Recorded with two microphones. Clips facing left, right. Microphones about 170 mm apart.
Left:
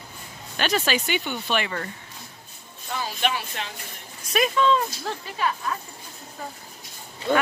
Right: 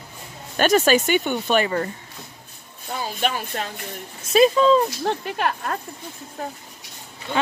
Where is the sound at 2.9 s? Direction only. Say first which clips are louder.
Right 2 dB; 40° right (ahead or behind).